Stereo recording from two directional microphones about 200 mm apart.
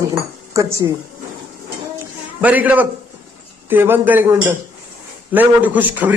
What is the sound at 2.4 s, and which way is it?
A man's voice, 10° right (ahead or behind).